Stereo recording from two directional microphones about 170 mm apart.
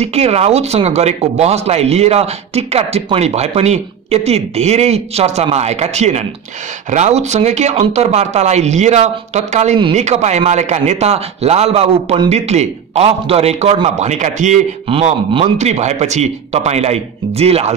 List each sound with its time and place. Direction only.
0.0 s speech: 40° right (ahead or behind)